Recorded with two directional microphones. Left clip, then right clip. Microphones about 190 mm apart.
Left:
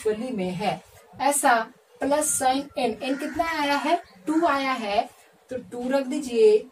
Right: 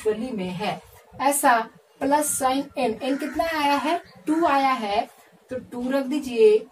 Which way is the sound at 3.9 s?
25° right (ahead or behind).